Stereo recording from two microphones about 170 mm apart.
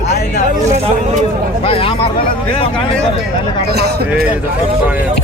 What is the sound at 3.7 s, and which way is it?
Speech, 70° right (ahead or behind).